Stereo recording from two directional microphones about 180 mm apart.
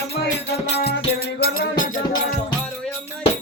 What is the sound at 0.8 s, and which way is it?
Music, 65° left (ahead or behind).